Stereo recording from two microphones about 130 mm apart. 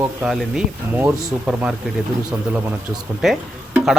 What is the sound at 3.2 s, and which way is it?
Speech, 5° right (ahead or behind).